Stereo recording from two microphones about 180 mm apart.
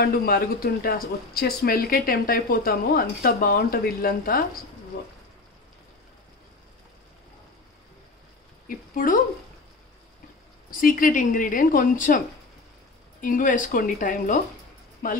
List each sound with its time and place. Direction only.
0.0 s speech: 55° left (ahead or behind)
8.6 s speech: 50° left (ahead or behind)
10.7 s a woman's voice: 50° left (ahead or behind)
13.2 s a woman's voice: 45° left (ahead or behind)